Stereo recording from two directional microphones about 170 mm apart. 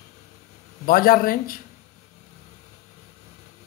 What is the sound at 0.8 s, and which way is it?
Speech, 60° left (ahead or behind).